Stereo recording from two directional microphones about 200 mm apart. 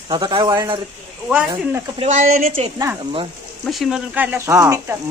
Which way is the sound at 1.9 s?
35° right (ahead or behind).